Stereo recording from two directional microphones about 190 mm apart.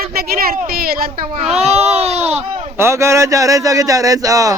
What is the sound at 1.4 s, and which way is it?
Speech, 35° right (ahead or behind).